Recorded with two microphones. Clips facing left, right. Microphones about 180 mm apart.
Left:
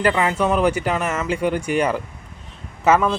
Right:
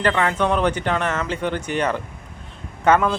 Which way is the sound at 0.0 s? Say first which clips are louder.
Left 1 dB; 10° left (ahead or behind).